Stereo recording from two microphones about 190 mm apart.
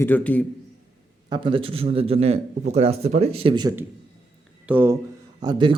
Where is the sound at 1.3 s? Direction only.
25° right (ahead or behind).